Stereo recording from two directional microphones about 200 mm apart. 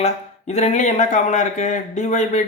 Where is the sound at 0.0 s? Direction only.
35° left (ahead or behind).